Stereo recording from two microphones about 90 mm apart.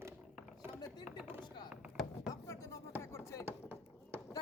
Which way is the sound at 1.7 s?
15° right (ahead or behind).